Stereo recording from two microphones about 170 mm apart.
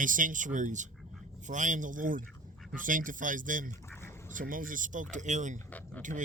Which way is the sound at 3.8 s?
15° left (ahead or behind).